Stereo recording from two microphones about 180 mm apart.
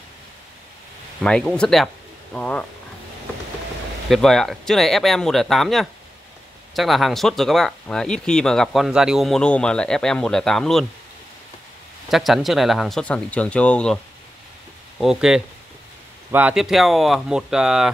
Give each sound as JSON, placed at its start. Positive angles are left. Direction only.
{"t": 1.2, "sound": "speech", "side_deg": 5}
{"t": 4.1, "sound": "speech", "side_deg": 0}
{"t": 12.1, "sound": "speech", "side_deg": 0}
{"t": 15.0, "sound": "speech", "side_deg": -5}